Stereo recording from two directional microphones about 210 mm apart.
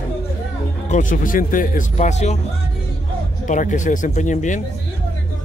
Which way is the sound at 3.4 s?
35° left (ahead or behind).